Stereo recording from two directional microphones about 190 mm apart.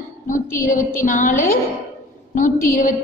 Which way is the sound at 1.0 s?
40° left (ahead or behind).